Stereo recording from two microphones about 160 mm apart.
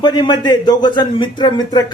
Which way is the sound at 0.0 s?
25° left (ahead or behind).